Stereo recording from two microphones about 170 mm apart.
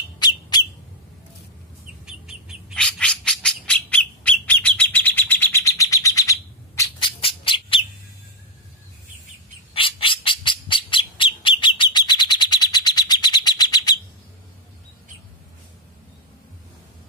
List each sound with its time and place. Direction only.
0.2 s bird: 25° left (ahead or behind)
2.0 s bird: 5° right (ahead or behind); by 6.9 s 20° left (ahead or behind)
7.0 s squawk: 30° left (ahead or behind)
9.8 s squawk: 30° left (ahead or behind)